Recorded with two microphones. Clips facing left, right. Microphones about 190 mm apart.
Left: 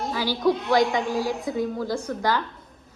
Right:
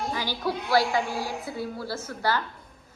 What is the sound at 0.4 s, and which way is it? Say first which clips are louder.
Speech: left 4 dB; 5° right (ahead or behind).